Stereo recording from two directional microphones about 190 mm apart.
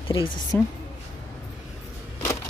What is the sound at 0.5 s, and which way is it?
Speech, 10° left (ahead or behind).